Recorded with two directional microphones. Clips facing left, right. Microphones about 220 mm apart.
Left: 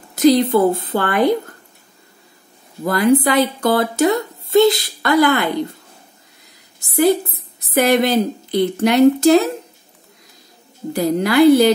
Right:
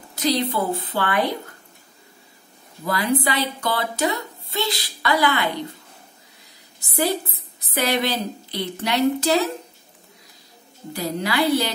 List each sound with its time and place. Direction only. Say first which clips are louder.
0.1 s speech: left 10 dB; 45° left (ahead or behind)
2.8 s speech: left 8 dB; 50° left (ahead or behind)
6.9 s speech: left 8 dB; 45° left (ahead or behind)
10.9 s speech: left 8 dB; 50° left (ahead or behind)